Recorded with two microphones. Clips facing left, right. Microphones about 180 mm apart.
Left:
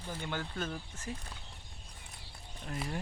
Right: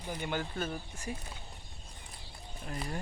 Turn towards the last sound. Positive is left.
turn(degrees=0)  # may be behind; listen again after turning